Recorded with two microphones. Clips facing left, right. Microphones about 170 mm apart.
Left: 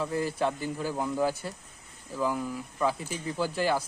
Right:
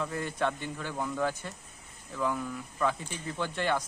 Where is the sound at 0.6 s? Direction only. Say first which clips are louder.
Left 5 dB; 35° left (ahead or behind).